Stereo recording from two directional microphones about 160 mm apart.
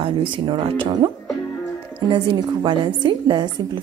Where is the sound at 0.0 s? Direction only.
30° right (ahead or behind).